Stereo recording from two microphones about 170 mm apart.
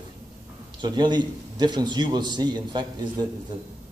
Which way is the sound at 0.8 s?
25° right (ahead or behind).